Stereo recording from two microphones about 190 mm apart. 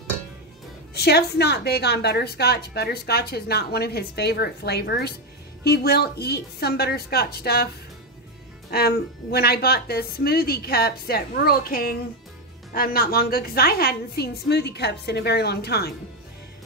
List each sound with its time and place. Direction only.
0.9 s a woman's voice: 60° left (ahead or behind)